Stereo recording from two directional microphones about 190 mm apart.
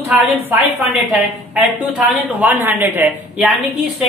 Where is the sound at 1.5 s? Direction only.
5° right (ahead or behind).